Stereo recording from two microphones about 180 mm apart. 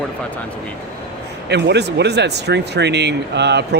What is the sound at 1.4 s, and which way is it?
Speech, 70° right (ahead or behind).